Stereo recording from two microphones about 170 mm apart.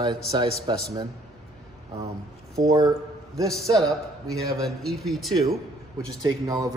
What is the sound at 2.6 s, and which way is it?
Speech, 20° right (ahead or behind).